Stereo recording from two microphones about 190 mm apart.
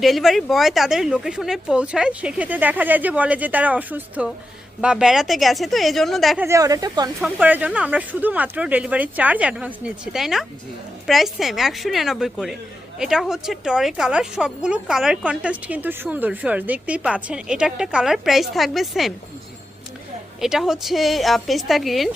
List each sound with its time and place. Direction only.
0.0 s a woman's voice: centre (ahead or behind)
6.4 s speech: 15° right (ahead or behind)
7.2 s a woman's voice: 10° right (ahead or behind)
20.4 s a woman's voice: centre (ahead or behind)